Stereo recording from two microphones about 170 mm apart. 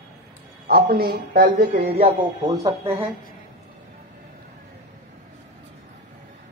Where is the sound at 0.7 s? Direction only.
65° right (ahead or behind).